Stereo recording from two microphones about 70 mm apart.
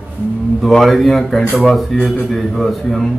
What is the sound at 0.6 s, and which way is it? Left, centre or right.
A man's voice, centre.